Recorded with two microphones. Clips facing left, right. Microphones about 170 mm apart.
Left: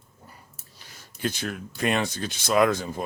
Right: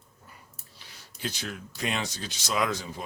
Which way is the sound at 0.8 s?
45° left (ahead or behind).